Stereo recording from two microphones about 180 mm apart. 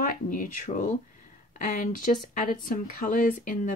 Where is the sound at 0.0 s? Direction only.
45° left (ahead or behind).